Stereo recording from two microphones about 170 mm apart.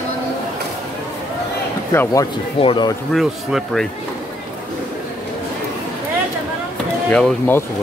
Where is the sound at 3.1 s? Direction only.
Centre (ahead or behind).